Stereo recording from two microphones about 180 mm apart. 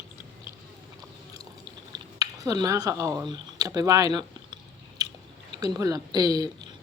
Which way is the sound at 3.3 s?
20° right (ahead or behind).